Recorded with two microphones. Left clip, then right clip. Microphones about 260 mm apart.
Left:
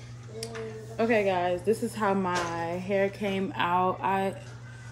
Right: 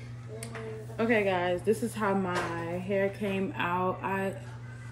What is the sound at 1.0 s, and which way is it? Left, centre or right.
A woman's voice, centre.